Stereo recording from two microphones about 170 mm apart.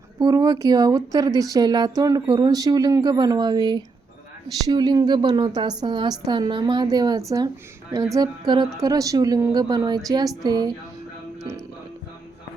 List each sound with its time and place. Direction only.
0.2 s speech: 25° right (ahead or behind)